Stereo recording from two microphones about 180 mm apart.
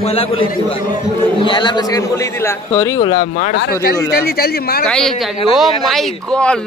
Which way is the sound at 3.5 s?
65° left (ahead or behind).